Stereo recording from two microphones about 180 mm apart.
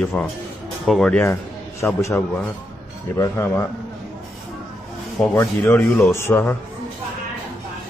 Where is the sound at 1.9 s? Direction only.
15° left (ahead or behind).